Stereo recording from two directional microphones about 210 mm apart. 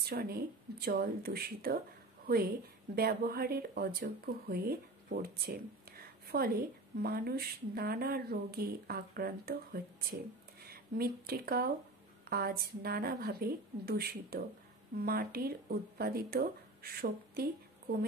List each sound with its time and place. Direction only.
0.0 s a woman's voice: 45° right (ahead or behind)